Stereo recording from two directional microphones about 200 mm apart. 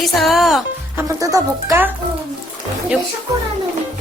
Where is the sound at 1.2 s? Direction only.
15° right (ahead or behind).